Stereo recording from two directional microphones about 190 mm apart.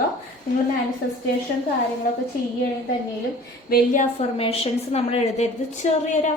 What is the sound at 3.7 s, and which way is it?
A woman's voice, 45° left (ahead or behind).